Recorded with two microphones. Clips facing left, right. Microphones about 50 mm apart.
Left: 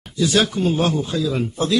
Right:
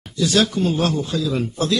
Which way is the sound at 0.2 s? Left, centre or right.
Centre.